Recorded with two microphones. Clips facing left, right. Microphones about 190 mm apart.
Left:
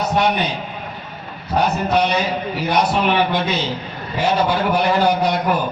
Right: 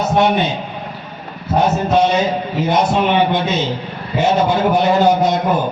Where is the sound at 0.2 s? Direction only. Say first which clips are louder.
Right 5 dB; 25° right (ahead or behind).